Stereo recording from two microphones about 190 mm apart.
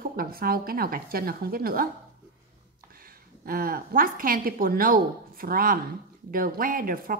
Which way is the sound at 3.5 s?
50° right (ahead or behind).